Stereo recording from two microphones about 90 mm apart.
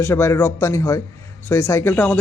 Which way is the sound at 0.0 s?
30° left (ahead or behind).